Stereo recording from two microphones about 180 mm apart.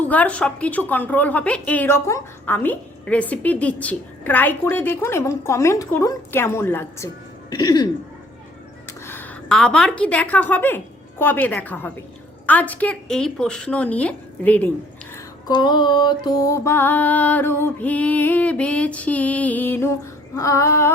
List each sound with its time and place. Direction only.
0.0 s a woman's voice: 10° left (ahead or behind)
7.5 s speech: 25° left (ahead or behind)
8.9 s a woman's voice: 10° left (ahead or behind)
15.4 s a woman's voice: 25° left (ahead or behind)